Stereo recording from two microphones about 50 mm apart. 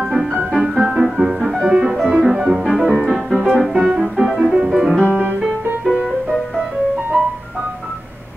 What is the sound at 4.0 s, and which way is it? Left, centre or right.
Music, centre.